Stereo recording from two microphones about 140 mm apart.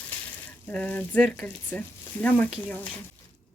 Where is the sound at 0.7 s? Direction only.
10° left (ahead or behind).